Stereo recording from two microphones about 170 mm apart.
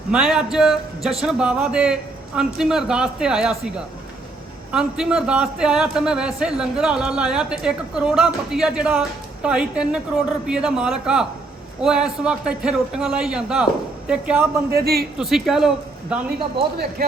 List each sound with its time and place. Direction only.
0.1 s a man's voice: centre (ahead or behind)
4.7 s a man's voice: 5° right (ahead or behind)
14.7 s a man's voice: 65° right (ahead or behind)
15.2 s a man's voice: centre (ahead or behind)
16.7 s a man's voice: 65° right (ahead or behind)